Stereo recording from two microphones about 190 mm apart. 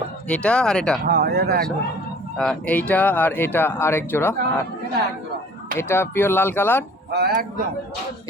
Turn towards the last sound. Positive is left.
turn(degrees=-55)  # may be behind; listen again after turning